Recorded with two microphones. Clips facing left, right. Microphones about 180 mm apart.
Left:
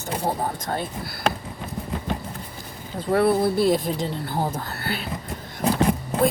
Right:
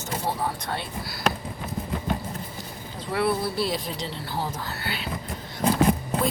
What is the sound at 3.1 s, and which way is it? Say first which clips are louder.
Speech: left 6 dB; 50° left (ahead or behind).